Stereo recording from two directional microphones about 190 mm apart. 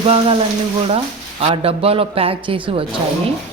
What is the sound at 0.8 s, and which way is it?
Speech, 30° right (ahead or behind).